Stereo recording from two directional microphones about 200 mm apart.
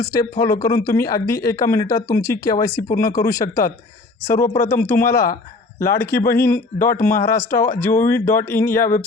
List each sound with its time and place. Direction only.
0.0 s speech: 15° left (ahead or behind)
2.9 s speech: 45° left (ahead or behind)
3.2 s speech: 15° left (ahead or behind)